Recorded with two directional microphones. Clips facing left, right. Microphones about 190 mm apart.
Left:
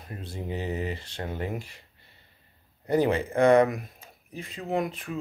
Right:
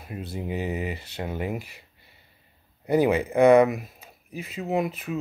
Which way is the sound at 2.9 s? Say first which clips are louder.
Right 3 dB; 10° right (ahead or behind).